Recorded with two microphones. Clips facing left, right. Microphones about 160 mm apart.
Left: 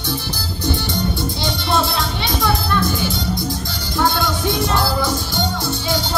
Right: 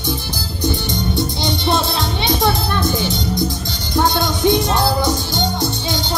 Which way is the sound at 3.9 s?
20° right (ahead or behind).